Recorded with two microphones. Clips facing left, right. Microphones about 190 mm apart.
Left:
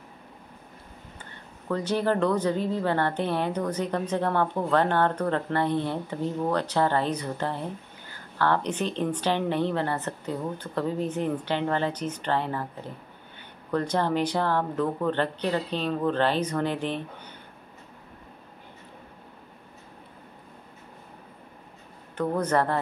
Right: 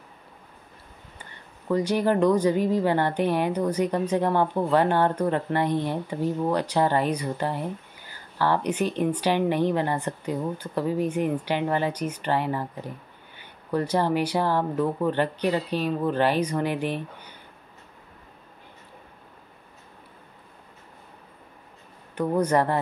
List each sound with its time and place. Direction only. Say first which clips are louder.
1.7 s a woman's voice: right 3 dB; 10° right (ahead or behind)
22.1 s a woman's voice: right 2 dB; 10° right (ahead or behind)